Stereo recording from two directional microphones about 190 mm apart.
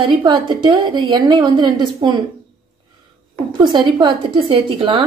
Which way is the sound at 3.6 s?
25° right (ahead or behind).